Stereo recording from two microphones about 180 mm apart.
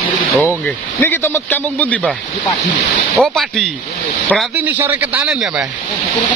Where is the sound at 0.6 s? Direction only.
10° left (ahead or behind).